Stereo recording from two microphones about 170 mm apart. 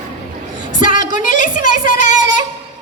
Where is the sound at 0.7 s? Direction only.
50° left (ahead or behind).